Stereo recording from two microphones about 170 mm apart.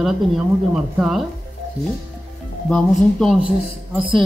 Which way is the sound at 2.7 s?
5° left (ahead or behind).